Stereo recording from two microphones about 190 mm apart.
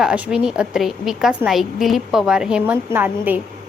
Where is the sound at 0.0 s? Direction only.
5° right (ahead or behind).